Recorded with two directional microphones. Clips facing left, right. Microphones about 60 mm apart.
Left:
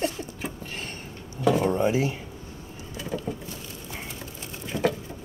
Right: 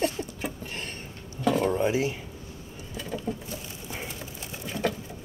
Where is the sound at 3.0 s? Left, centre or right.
Centre.